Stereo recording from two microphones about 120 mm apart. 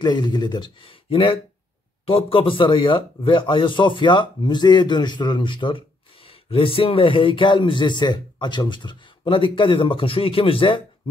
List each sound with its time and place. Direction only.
0.0 s a man's voice: 35° left (ahead or behind)